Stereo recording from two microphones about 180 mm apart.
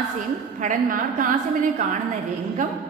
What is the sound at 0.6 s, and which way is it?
A woman's voice, 45° right (ahead or behind).